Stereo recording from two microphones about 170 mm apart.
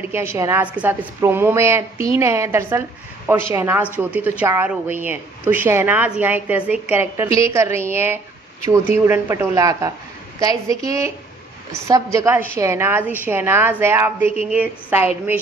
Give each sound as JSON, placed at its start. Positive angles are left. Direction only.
{"t": 0.1, "sound": "a woman's voice", "side_deg": -15}